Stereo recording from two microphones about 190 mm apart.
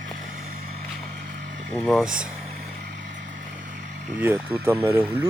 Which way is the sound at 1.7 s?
Centre (ahead or behind).